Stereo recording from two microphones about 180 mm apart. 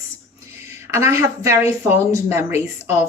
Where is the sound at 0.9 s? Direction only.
15° right (ahead or behind).